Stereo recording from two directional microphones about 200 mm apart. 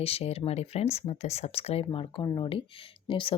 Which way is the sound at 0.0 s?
30° left (ahead or behind).